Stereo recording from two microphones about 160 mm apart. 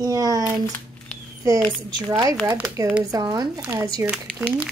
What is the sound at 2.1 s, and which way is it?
A woman's voice, 30° right (ahead or behind).